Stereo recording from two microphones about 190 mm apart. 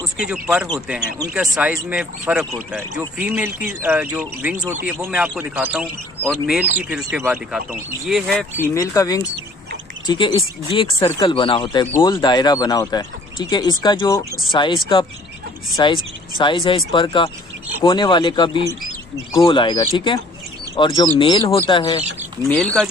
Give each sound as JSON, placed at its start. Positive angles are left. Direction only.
{"t": 0.2, "sound": "speech", "side_deg": -5}
{"t": 8.5, "sound": "speech", "side_deg": 20}
{"t": 22.4, "sound": "speech", "side_deg": 5}